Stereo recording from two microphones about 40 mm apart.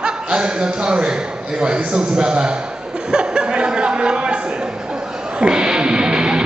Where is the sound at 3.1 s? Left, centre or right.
Right.